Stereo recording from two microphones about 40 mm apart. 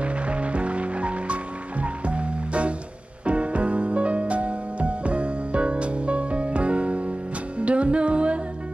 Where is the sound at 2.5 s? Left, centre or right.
Right.